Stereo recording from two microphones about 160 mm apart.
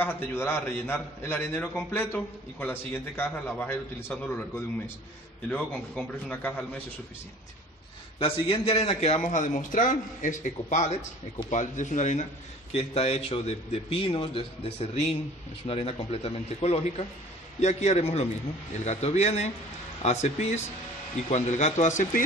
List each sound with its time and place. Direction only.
0.0 s a man's voice: 15° left (ahead or behind)
8.2 s a man's voice: 35° left (ahead or behind)